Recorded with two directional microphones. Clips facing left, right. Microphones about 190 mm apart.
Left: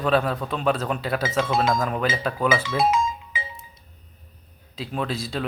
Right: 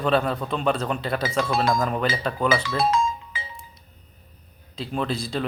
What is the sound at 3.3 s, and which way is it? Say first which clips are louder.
Music: left 3 dB; 15° left (ahead or behind).